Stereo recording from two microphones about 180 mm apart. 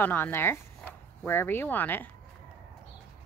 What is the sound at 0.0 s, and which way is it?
Speech, 10° left (ahead or behind).